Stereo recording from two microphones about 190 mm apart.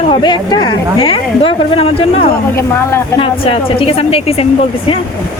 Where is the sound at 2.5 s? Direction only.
15° left (ahead or behind).